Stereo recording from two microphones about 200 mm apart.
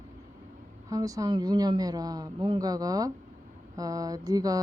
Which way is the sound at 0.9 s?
15° right (ahead or behind).